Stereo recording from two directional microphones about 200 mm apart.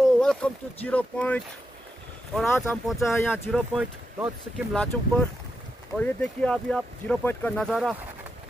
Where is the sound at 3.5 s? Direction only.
5° right (ahead or behind).